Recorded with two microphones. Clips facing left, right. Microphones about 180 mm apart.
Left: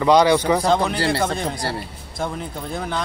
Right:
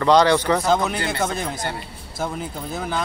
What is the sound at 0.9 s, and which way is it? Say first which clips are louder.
Speech: left 4 dB; 30° left (ahead or behind).